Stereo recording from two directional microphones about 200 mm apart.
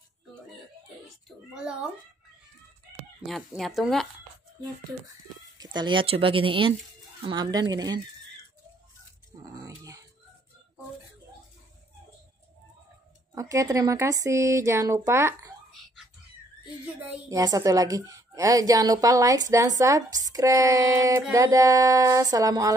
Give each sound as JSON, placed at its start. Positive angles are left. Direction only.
{"t": 1.5, "sound": "speech", "side_deg": -5}
{"t": 3.3, "sound": "speech", "side_deg": 0}
{"t": 5.6, "sound": "speech", "side_deg": -20}
{"t": 9.6, "sound": "dog", "side_deg": -15}
{"t": 13.3, "sound": "a woman's voice", "side_deg": -15}
{"t": 16.8, "sound": "a woman's voice", "side_deg": -15}